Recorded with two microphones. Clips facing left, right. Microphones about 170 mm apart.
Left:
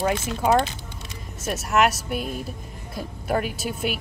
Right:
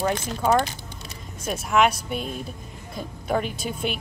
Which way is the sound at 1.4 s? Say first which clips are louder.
Even; 5° left (ahead or behind).